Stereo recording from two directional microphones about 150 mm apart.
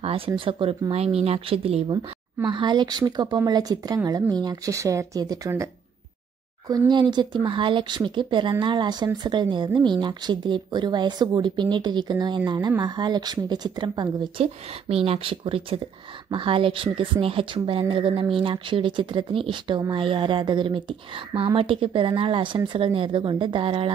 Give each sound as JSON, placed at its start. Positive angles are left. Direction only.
{"t": 0.0, "sound": "a sound", "side_deg": -40}
{"t": 0.5, "sound": "speech", "side_deg": -35}
{"t": 2.4, "sound": "speech", "side_deg": -30}
{"t": 6.7, "sound": "speech", "side_deg": -30}